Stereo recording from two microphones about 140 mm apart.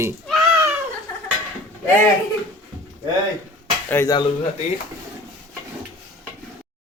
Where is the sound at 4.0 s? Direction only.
15° left (ahead or behind).